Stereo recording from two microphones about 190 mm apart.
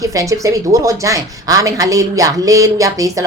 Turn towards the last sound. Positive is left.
turn(degrees=-20)  # may be behind; listen again after turning